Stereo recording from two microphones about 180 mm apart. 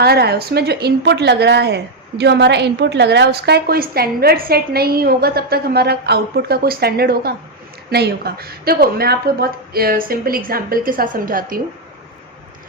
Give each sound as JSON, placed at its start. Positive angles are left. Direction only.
{"t": 0.0, "sound": "a woman's voice", "side_deg": -60}